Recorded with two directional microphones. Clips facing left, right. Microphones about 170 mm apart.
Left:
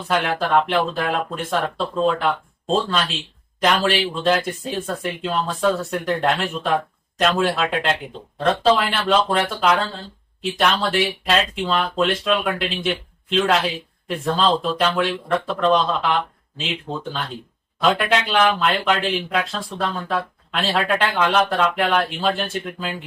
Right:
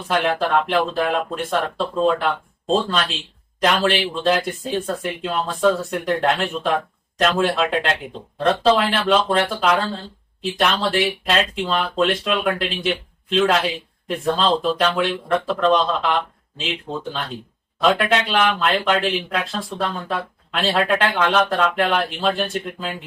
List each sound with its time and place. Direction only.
0.1 s speech: centre (ahead or behind)
11.3 s speech: centre (ahead or behind)
17.8 s speech: centre (ahead or behind)